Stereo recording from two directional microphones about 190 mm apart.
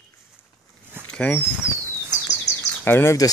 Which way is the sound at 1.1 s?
5° left (ahead or behind).